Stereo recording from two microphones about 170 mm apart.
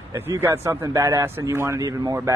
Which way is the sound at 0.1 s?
15° right (ahead or behind).